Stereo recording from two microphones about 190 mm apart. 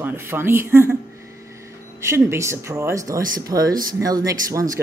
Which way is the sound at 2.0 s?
15° right (ahead or behind).